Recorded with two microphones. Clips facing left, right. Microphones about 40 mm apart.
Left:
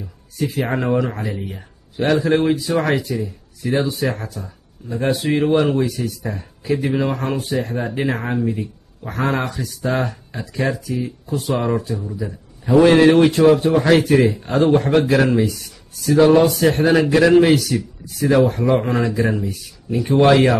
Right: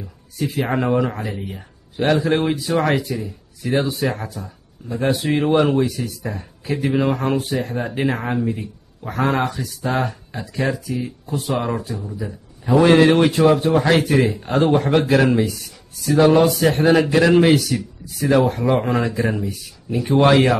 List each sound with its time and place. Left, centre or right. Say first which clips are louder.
0.4 s speech: even; centre
4.1 s a man's voice: even; centre
4.4 s speech: even; centre
11.3 s a man's voice: left 2 dB; centre
13.4 s a man's voice: left 2 dB; centre